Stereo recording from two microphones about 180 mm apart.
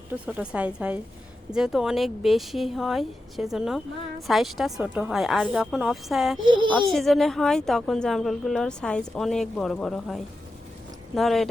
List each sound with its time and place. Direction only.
0.3 s a woman's voice: 5° right (ahead or behind)
6.5 s speech: 25° right (ahead or behind)
6.9 s speech: centre (ahead or behind)